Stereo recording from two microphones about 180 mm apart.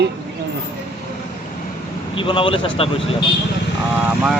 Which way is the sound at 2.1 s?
30° left (ahead or behind).